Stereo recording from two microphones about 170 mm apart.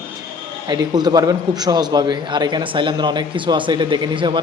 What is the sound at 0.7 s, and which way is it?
A man's voice, 25° right (ahead or behind).